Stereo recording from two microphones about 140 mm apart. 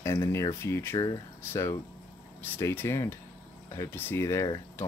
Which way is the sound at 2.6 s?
20° left (ahead or behind).